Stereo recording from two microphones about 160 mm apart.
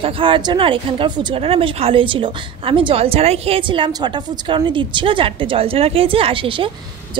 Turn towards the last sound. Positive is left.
turn(degrees=-35)  # may be behind; listen again after turning